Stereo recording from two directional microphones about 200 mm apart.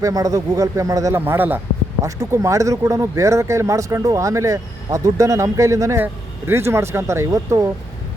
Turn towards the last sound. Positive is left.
turn(degrees=-15)  # may be behind; listen again after turning